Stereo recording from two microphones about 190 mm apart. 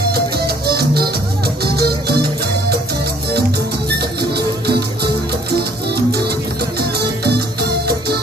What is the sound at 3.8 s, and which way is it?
Music, 60° right (ahead or behind).